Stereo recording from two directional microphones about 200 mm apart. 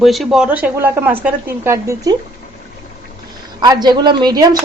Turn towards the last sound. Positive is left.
turn(degrees=-20)  # may be behind; listen again after turning